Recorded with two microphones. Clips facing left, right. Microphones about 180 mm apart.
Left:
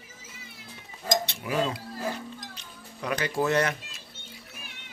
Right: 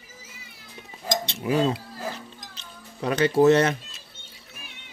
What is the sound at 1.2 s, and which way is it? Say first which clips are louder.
Livestock: right 5 dB; 25° right (ahead or behind).